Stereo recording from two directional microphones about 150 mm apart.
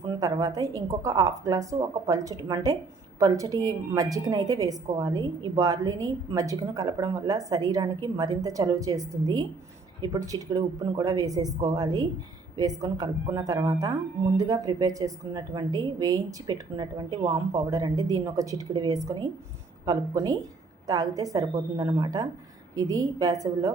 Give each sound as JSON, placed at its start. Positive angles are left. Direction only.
{"t": 0.2, "sound": "a woman's voice", "side_deg": -25}